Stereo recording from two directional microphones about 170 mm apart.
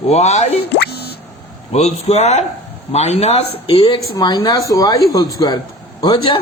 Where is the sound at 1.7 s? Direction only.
40° left (ahead or behind).